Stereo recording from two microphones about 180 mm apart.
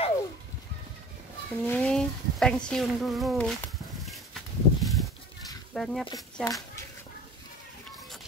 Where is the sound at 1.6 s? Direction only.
10° left (ahead or behind).